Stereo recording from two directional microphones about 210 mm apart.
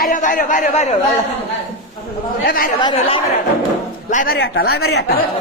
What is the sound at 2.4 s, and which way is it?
Speech, 45° left (ahead or behind).